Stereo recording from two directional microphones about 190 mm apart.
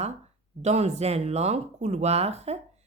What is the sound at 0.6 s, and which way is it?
Speech, 35° right (ahead or behind).